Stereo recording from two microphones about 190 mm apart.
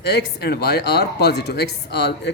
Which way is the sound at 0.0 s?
60° left (ahead or behind).